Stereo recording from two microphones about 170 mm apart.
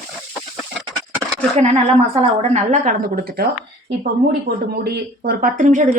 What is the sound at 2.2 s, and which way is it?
Speech, 40° right (ahead or behind).